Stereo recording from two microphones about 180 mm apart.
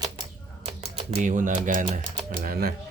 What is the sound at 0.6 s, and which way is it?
Speech, 35° right (ahead or behind).